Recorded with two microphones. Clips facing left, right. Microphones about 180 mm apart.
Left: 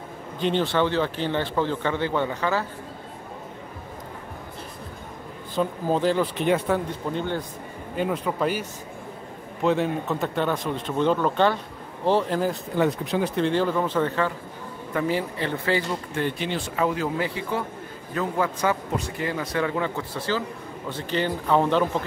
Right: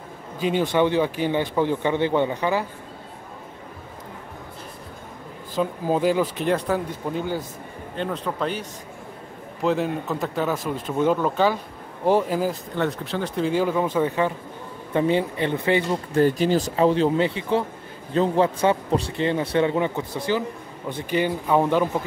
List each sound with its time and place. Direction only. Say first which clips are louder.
0.4 s speech: right 2 dB; 10° right (ahead or behind)
5.6 s speech: right 1 dB; 10° right (ahead or behind)
6.4 s speech: even; centre (ahead or behind)
7.9 s speech: left 2 dB; 10° left (ahead or behind)
12.7 s speech: left 2 dB; 15° left (ahead or behind)
13.4 s a man's voice: right 3 dB; 10° right (ahead or behind)
16.1 s a man's voice: right 12 dB; 40° right (ahead or behind); by 21.8 s 10° right (ahead or behind)